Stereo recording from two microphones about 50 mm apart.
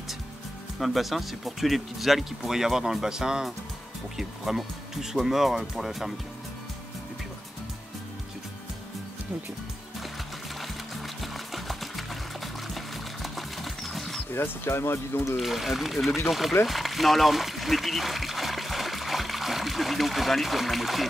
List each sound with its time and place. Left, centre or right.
0.7 s speech: centre
10.6 s music: centre
12.6 s pig: centre
14.3 s speech: left
15.3 s speech: centre
16.6 s a sound: centre